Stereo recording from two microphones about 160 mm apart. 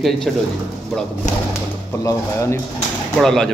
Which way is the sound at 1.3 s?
50° left (ahead or behind).